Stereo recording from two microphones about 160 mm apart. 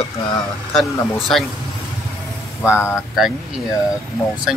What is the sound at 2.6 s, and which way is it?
Speech, 5° right (ahead or behind).